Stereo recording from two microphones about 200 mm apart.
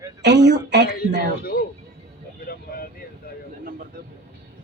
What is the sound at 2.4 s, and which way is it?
Vehicle, 50° left (ahead or behind).